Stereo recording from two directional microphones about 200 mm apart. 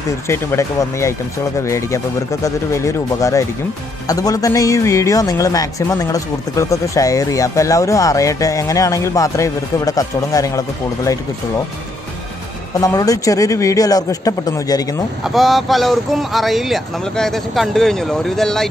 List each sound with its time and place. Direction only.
0.3 s speech: 15° left (ahead or behind)
12.8 s speech: 15° left (ahead or behind)
15.2 s speech: centre (ahead or behind)